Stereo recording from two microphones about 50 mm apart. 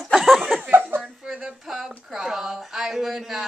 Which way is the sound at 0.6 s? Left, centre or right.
Right.